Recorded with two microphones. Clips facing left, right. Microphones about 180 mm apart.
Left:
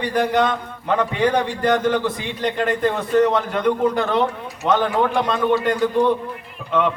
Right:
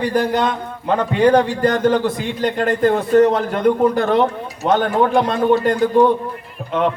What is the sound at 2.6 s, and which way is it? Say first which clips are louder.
A man's voice: right 5 dB; 40° right (ahead or behind).